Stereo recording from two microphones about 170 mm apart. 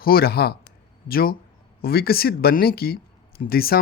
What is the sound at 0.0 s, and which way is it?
Speech, 65° left (ahead or behind).